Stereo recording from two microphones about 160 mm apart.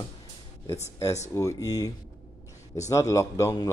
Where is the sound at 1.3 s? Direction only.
20° left (ahead or behind).